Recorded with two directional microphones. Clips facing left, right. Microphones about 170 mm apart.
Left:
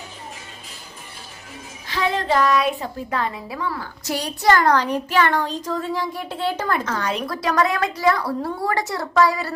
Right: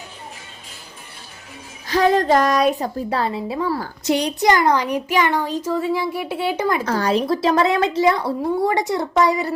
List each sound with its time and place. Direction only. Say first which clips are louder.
1.9 s a woman's voice: right 6 dB; 40° right (ahead or behind)
4.0 s a child's voice: right 2 dB; 20° right (ahead or behind)
6.8 s a woman's voice: right 6 dB; 35° right (ahead or behind)